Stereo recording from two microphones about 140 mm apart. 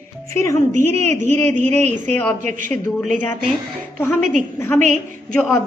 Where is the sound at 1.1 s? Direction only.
15° left (ahead or behind).